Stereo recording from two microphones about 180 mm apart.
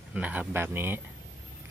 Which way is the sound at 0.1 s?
10° right (ahead or behind).